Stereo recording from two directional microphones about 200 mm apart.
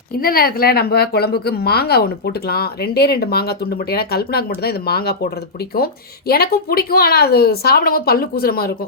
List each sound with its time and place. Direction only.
0.2 s a woman's voice: 45° left (ahead or behind)